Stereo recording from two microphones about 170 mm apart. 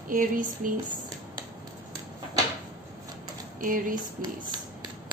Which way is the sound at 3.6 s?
50° right (ahead or behind).